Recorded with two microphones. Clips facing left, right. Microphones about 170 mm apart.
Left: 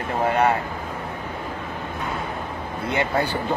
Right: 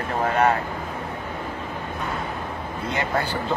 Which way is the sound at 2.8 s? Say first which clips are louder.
Left 3 dB; 65° left (ahead or behind).